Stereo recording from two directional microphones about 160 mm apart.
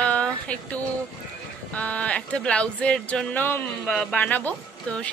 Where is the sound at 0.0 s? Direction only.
5° left (ahead or behind).